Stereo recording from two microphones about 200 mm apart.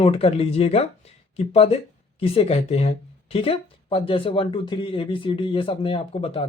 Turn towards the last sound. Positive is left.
turn(degrees=30)  # may be behind; listen again after turning